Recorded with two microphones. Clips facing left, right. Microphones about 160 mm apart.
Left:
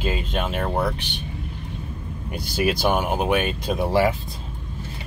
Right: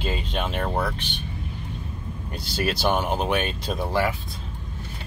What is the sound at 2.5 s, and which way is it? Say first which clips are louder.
Speech: left 2 dB; 10° left (ahead or behind).